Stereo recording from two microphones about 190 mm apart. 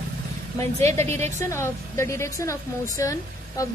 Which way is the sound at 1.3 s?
15° left (ahead or behind).